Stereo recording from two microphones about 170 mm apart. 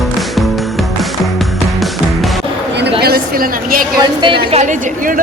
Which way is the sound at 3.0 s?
65° right (ahead or behind).